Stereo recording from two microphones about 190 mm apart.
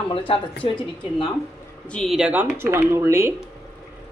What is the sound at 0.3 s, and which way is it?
Speech, 30° left (ahead or behind).